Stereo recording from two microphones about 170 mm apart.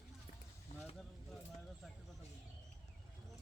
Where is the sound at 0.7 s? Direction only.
45° left (ahead or behind).